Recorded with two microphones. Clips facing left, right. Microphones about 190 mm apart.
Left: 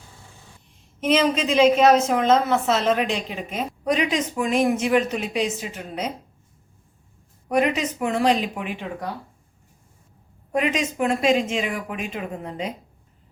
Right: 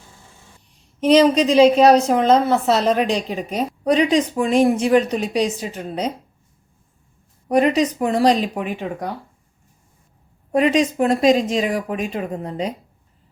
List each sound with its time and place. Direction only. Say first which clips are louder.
1.0 s a woman's voice: right 7 dB; 35° right (ahead or behind)
7.4 s a woman's voice: right 5 dB; 35° right (ahead or behind)
10.5 s a woman's voice: right 7 dB; 35° right (ahead or behind)